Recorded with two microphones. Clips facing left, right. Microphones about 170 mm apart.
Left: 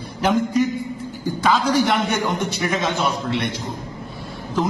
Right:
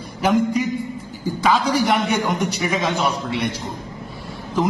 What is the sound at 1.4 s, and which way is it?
Speech, 15° right (ahead or behind).